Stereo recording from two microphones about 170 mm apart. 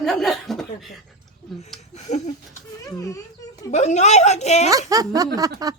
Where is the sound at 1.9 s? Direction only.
45° left (ahead or behind).